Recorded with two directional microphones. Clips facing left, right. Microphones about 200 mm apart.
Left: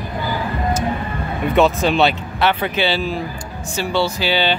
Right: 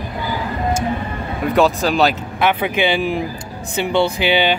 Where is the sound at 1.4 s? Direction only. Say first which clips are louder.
Even; centre (ahead or behind); by 4.5 s 15° right (ahead or behind).